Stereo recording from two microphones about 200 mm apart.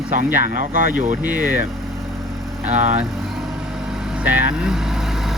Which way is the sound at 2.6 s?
35° right (ahead or behind).